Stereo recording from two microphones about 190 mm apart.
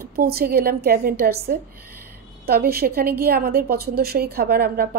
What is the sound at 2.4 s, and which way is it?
A woman's voice, 55° right (ahead or behind).